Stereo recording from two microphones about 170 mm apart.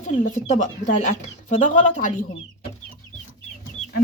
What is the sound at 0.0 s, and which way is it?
Speech, 50° left (ahead or behind).